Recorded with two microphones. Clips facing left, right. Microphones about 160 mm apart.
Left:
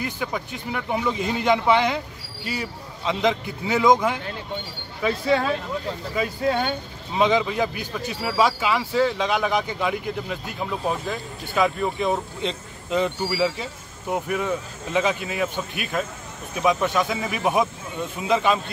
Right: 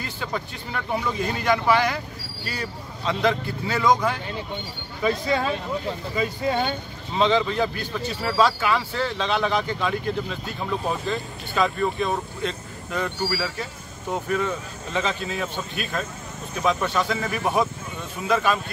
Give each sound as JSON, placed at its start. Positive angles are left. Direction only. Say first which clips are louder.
{"t": 0.0, "sound": "speech", "louder": "left 2 dB", "side_deg": 10}
{"t": 5.0, "sound": "speech", "louder": "left 1 dB", "side_deg": 0}
{"t": 7.2, "sound": "speech", "louder": "even", "side_deg": 10}
{"t": 11.6, "sound": "speech", "louder": "left 1 dB", "side_deg": 20}